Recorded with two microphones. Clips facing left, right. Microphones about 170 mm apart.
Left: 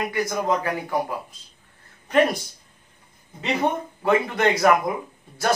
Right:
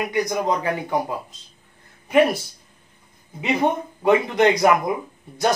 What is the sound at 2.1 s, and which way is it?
Speech, 10° right (ahead or behind).